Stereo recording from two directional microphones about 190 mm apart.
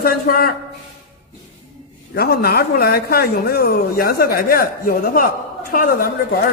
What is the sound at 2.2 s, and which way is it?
Speech, 55° left (ahead or behind).